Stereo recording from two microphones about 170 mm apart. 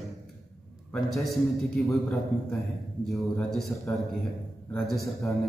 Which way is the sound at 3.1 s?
Centre (ahead or behind).